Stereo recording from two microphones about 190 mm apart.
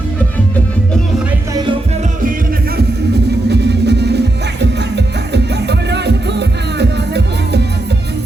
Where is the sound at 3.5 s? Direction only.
60° right (ahead or behind).